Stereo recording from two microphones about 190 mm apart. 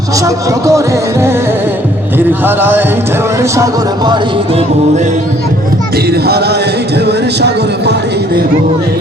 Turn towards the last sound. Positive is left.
turn(degrees=-60)  # may be behind; listen again after turning